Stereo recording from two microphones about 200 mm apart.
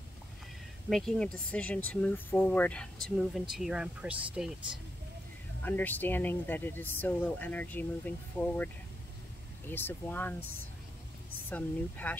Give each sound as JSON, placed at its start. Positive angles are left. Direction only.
{"t": 0.8, "sound": "speech", "side_deg": 0}
{"t": 5.6, "sound": "speech", "side_deg": 10}
{"t": 9.7, "sound": "speech", "side_deg": 10}
{"t": 11.4, "sound": "speech", "side_deg": 10}